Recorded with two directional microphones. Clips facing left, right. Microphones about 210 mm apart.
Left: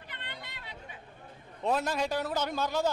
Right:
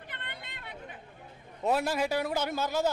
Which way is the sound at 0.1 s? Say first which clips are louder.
Left 1 dB; 55° right (ahead or behind).